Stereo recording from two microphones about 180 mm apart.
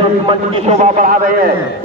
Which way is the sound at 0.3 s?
40° right (ahead or behind).